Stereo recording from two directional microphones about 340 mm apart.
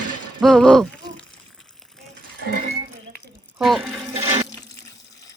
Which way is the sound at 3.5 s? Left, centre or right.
Centre.